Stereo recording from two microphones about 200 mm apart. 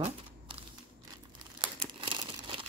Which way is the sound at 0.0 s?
25° right (ahead or behind).